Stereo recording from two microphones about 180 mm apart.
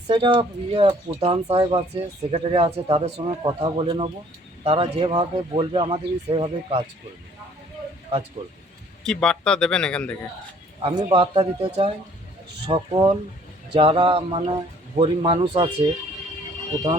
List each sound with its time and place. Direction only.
0.1 s speech: 30° right (ahead or behind)
9.0 s speech: 5° left (ahead or behind)
10.8 s speech: 30° right (ahead or behind)